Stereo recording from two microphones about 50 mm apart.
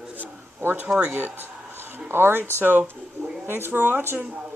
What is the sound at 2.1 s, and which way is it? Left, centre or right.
Speech, right.